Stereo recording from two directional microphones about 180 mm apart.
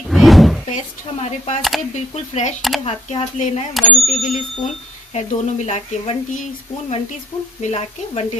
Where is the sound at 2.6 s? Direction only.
Centre (ahead or behind).